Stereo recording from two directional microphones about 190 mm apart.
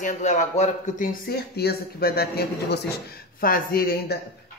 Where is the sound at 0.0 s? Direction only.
40° left (ahead or behind).